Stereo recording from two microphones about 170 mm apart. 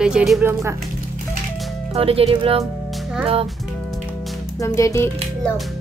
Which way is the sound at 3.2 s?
35° right (ahead or behind).